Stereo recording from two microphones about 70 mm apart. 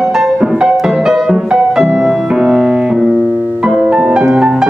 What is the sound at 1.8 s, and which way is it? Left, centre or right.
Piano, centre.